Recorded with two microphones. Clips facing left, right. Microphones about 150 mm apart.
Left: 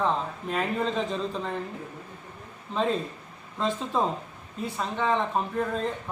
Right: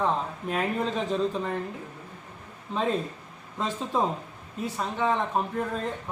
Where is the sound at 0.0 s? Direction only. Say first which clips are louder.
Even; 5° right (ahead or behind).